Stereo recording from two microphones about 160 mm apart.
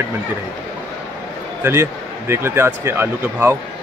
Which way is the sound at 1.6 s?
15° right (ahead or behind).